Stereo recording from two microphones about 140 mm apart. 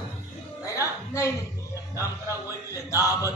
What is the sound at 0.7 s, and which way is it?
Music, 20° left (ahead or behind).